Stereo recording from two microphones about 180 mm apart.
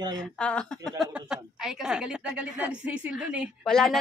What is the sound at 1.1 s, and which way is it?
A woman's voice, 5° right (ahead or behind).